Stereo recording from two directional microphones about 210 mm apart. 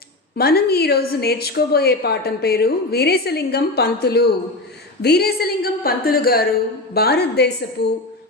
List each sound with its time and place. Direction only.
0.3 s a woman's voice: 50° left (ahead or behind)